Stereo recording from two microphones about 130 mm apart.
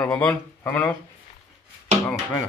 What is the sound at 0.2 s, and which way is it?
Speech, 20° left (ahead or behind).